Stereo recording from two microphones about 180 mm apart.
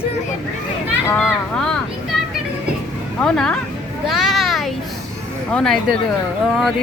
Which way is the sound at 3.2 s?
5° left (ahead or behind).